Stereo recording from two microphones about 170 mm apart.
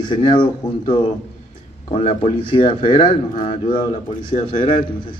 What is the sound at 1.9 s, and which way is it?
Speech, 40° left (ahead or behind).